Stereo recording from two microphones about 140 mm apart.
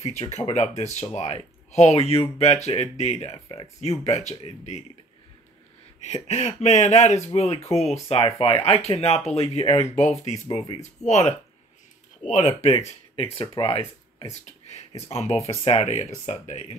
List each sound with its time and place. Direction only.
0.0 s speech: 50° left (ahead or behind)
6.0 s speech: 55° left (ahead or behind)